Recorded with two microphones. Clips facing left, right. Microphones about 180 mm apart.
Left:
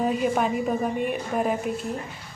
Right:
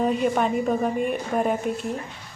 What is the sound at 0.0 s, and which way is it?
A woman's voice, 5° left (ahead or behind).